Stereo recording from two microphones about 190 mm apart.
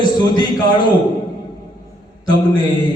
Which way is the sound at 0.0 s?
25° left (ahead or behind).